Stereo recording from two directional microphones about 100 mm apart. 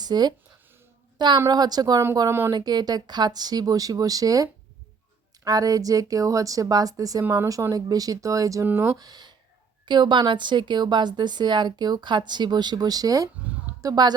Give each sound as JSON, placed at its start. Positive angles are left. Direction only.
{"t": 0.0, "sound": "speech", "side_deg": -45}
{"t": 1.5, "sound": "speech", "side_deg": -40}
{"t": 5.5, "sound": "speech", "side_deg": -40}
{"t": 8.6, "sound": "speech", "side_deg": -25}
{"t": 9.0, "sound": "a woman's voice", "side_deg": -45}